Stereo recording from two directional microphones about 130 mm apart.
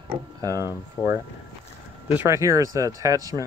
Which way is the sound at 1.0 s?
25° left (ahead or behind).